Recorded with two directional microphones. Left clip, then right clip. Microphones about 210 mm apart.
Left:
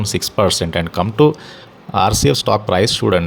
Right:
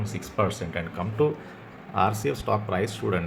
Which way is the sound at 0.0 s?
50° left (ahead or behind).